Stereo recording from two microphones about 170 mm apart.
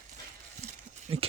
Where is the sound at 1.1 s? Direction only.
35° right (ahead or behind).